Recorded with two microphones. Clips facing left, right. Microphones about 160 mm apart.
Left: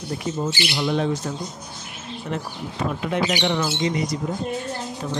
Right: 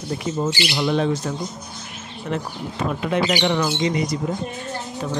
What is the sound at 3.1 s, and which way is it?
Speech, 90° right.